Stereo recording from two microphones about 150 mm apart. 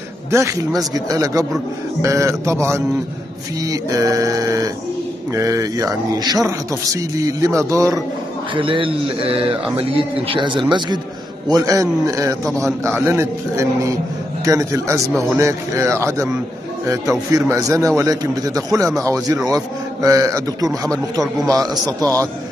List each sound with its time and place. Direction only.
0.3 s a man's voice: 20° right (ahead or behind)
8.5 s a man's voice: 35° right (ahead or behind); by 12.4 s 20° right (ahead or behind)
12.4 s a man's voice: 5° left (ahead or behind)
12.8 s a man's voice: 15° right (ahead or behind)
17.3 s a man's voice: 20° right (ahead or behind)
20.9 s a man's voice: centre (ahead or behind)